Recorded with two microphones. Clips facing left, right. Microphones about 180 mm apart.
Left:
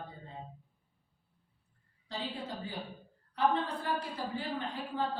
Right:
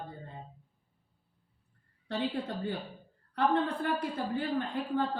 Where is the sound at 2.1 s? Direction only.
60° right (ahead or behind).